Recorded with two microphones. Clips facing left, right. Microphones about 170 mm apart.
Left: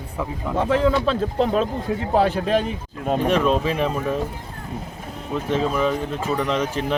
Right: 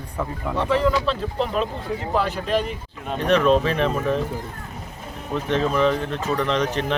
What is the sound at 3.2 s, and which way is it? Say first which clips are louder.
Speech: right 4 dB; 5° left (ahead or behind).